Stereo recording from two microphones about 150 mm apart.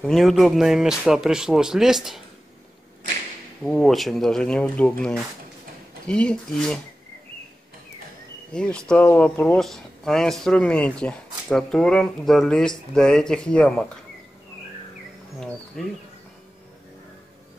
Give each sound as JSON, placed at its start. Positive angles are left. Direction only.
{"t": 0.0, "sound": "speech", "side_deg": 0}
{"t": 3.6, "sound": "speech", "side_deg": 5}
{"t": 8.5, "sound": "speech", "side_deg": 5}
{"t": 15.4, "sound": "speech", "side_deg": 0}